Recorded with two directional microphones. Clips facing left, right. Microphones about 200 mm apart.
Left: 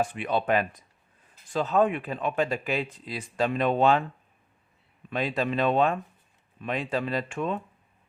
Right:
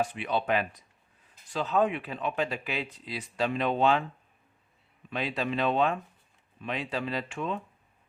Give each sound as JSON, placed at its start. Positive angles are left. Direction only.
{"t": 0.0, "sound": "a man's voice", "side_deg": 50}
{"t": 5.1, "sound": "a man's voice", "side_deg": 45}